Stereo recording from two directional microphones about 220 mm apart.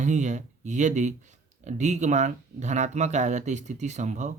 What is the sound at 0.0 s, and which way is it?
Speech, 35° right (ahead or behind).